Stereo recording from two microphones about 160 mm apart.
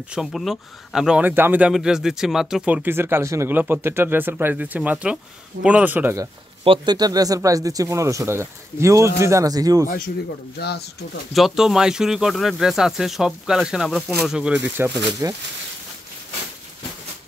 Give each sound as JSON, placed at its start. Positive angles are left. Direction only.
{"t": 0.1, "sound": "speech", "side_deg": 0}
{"t": 6.6, "sound": "speech", "side_deg": -30}
{"t": 10.6, "sound": "speech", "side_deg": 90}
{"t": 11.3, "sound": "speech", "side_deg": 0}
{"t": 14.8, "sound": "speech", "side_deg": -20}